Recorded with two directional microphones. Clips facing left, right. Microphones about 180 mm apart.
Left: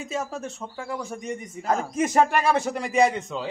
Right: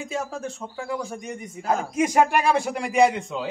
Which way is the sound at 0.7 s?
Centre (ahead or behind).